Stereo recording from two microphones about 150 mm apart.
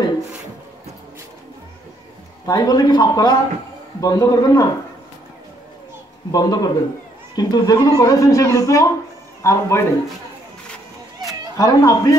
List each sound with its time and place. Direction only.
2.4 s speech: 25° left (ahead or behind)
6.3 s speech: 25° left (ahead or behind)
11.5 s speech: 25° left (ahead or behind)